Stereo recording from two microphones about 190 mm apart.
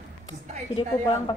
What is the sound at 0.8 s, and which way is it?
Speech, 25° left (ahead or behind).